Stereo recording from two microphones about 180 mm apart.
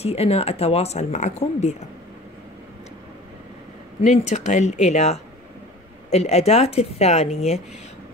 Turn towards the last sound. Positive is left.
turn(degrees=35)  # may be behind; listen again after turning